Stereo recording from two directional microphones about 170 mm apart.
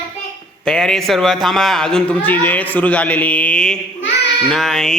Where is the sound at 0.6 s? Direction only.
5° left (ahead or behind).